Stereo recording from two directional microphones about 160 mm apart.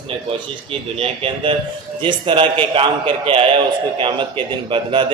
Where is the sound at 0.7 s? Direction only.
35° right (ahead or behind).